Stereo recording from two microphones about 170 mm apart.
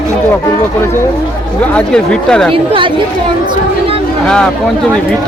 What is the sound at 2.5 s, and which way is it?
Speech, 30° right (ahead or behind).